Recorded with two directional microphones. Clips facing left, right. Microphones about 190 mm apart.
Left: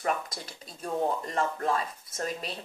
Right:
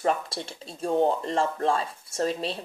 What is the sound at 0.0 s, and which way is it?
Speech, 30° right (ahead or behind).